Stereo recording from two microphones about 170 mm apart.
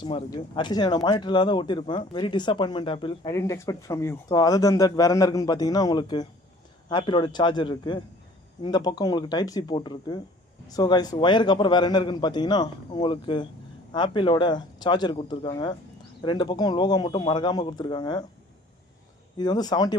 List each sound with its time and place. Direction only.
0.0 s speech: 30° left (ahead or behind)
3.3 s speech: 20° left (ahead or behind)
19.4 s speech: 25° left (ahead or behind)